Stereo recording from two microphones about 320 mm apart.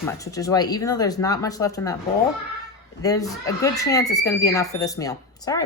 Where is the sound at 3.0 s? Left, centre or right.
Centre.